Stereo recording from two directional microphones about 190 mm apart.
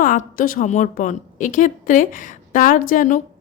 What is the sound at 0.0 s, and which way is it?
A woman's voice, 45° left (ahead or behind).